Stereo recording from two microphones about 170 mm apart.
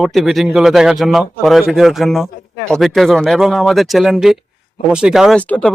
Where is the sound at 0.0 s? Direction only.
Centre (ahead or behind).